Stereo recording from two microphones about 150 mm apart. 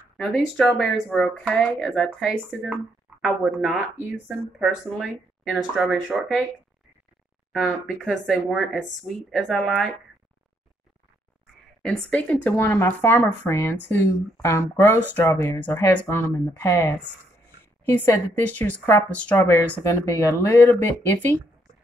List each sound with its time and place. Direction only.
0.2 s speech: 5° left (ahead or behind)
7.8 s speech: centre (ahead or behind)
11.8 s speech: 5° left (ahead or behind)